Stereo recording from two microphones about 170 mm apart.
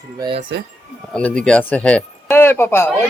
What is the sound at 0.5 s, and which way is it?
Speech, 90° right.